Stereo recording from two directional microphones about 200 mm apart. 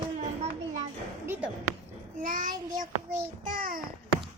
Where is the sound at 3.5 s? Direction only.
45° right (ahead or behind).